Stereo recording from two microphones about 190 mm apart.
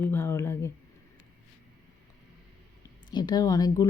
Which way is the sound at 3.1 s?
20° left (ahead or behind).